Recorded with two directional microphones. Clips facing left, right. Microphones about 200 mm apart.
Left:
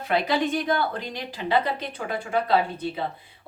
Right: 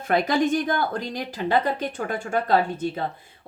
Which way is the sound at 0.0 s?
50° right (ahead or behind).